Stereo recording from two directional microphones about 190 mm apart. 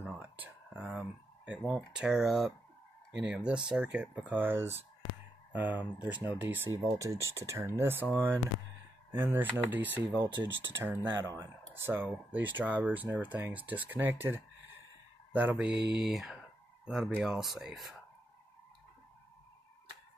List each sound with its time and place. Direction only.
0.0 s a sound: 10° right (ahead or behind)
1.6 s speech: 5° right (ahead or behind)
9.1 s speech: 10° right (ahead or behind)
15.8 s speech: 60° right (ahead or behind)
16.1 s speech: centre (ahead or behind)